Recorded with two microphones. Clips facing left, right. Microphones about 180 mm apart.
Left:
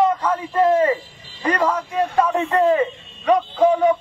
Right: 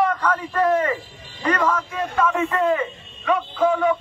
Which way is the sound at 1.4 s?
30° left (ahead or behind).